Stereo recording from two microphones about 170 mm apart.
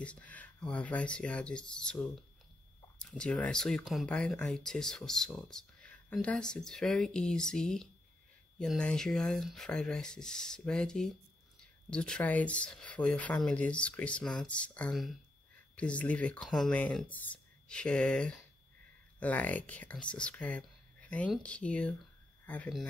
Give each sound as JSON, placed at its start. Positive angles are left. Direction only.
{"t": 0.0, "sound": "speech", "side_deg": 10}